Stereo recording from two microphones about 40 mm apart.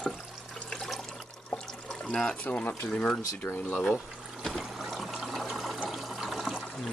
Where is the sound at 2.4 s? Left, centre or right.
Left.